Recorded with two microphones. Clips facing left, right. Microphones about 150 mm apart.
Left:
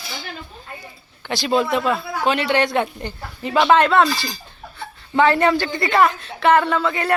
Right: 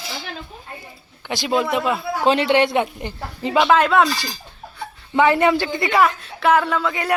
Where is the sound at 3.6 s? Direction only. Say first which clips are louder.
Left 1 dB; 5° right (ahead or behind).